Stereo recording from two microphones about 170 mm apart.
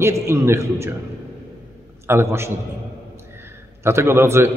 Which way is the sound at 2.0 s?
15° right (ahead or behind).